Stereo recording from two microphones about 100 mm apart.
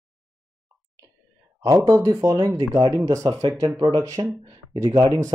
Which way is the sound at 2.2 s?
45° right (ahead or behind).